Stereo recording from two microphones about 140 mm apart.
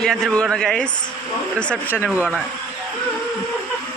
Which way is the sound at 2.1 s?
10° right (ahead or behind).